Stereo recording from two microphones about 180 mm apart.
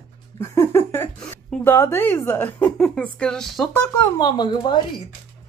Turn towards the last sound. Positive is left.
turn(degrees=25)  # may be behind; listen again after turning